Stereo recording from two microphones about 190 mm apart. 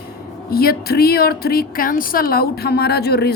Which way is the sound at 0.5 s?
55° left (ahead or behind).